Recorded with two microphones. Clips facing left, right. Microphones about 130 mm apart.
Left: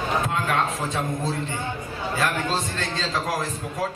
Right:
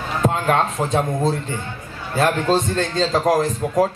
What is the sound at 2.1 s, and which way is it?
A man's voice, 45° right (ahead or behind).